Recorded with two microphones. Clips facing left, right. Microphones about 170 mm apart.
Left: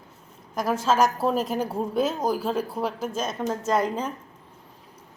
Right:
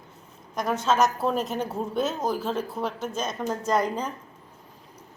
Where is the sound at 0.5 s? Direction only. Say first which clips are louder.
Left 1 dB; 5° left (ahead or behind).